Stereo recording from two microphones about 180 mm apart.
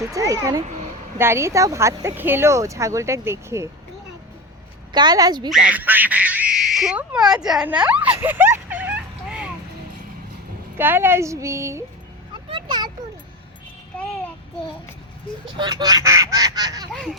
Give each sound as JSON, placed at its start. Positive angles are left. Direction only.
{"t": 0.1, "sound": "speech", "side_deg": -20}
{"t": 4.9, "sound": "speech", "side_deg": -25}
{"t": 5.5, "sound": "speech", "side_deg": -5}
{"t": 10.8, "sound": "speech", "side_deg": -10}
{"t": 12.5, "sound": "a sound", "side_deg": -25}
{"t": 15.5, "sound": "speech", "side_deg": -25}
{"t": 16.9, "sound": "speech", "side_deg": 0}